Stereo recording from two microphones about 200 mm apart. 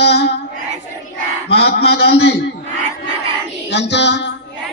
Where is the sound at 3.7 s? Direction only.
60° left (ahead or behind).